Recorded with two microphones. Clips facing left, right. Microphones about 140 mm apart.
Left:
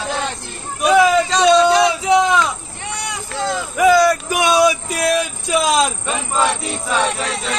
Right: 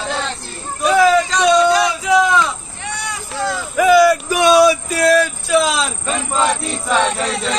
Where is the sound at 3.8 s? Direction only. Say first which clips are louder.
Right 2 dB; 15° left (ahead or behind).